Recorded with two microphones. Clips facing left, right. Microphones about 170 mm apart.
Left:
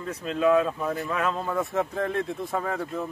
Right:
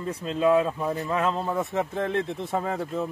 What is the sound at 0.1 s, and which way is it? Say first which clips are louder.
Speech: even; 30° right (ahead or behind).